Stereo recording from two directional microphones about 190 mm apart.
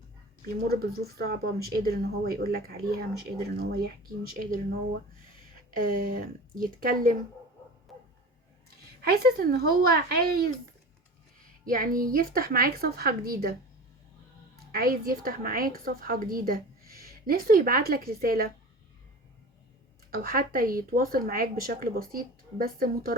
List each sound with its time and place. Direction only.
0.4 s a woman's voice: 55° right (ahead or behind)
5.7 s a woman's voice: 45° right (ahead or behind)
7.9 s bow-wow: centre (ahead or behind)
9.0 s a woman's voice: 55° right (ahead or behind)
11.6 s a woman's voice: 45° right (ahead or behind)
14.7 s a woman's voice: 50° right (ahead or behind)
20.1 s a woman's voice: 50° right (ahead or behind)